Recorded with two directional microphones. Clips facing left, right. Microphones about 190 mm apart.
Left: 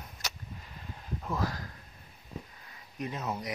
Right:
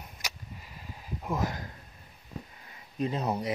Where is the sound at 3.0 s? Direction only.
30° right (ahead or behind).